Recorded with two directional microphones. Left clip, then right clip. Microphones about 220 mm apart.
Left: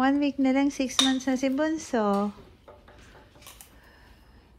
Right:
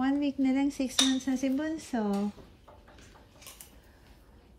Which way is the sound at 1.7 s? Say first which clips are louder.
Left 7 dB; 35° right (ahead or behind).